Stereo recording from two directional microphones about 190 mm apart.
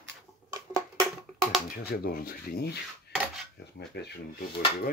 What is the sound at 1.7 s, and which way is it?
Speech, 50° left (ahead or behind).